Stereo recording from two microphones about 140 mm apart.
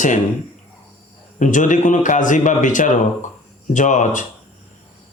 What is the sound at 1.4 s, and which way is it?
Speech, 65° left (ahead or behind).